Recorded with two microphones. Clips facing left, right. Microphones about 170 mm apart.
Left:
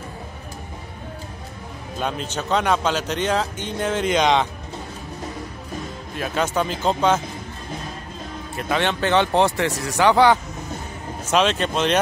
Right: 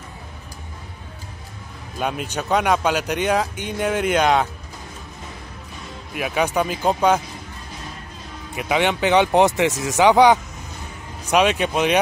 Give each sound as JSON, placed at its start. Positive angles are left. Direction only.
{"t": 2.0, "sound": "speech", "side_deg": -10}
{"t": 6.1, "sound": "speech", "side_deg": -10}
{"t": 8.5, "sound": "speech", "side_deg": -15}